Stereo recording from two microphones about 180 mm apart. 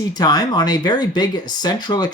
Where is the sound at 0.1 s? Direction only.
20° left (ahead or behind).